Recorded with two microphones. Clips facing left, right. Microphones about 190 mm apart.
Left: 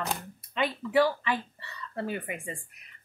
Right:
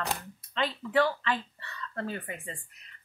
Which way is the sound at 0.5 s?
10° left (ahead or behind).